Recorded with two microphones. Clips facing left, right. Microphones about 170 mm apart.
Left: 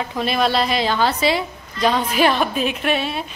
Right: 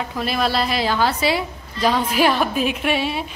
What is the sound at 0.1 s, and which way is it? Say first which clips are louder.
A woman's voice: left 3 dB; centre (ahead or behind).